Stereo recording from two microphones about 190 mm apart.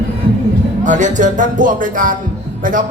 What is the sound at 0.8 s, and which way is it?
Speech, 40° right (ahead or behind).